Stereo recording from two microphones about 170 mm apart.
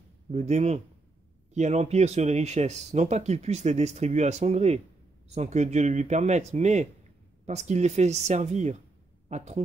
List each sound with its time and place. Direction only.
0.3 s speech: 40° right (ahead or behind)